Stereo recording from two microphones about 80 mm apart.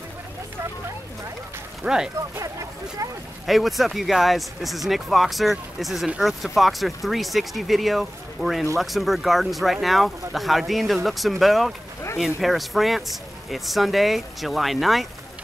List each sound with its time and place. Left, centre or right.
1.8 s speech: centre
2.3 s speech: right
3.4 s speech: centre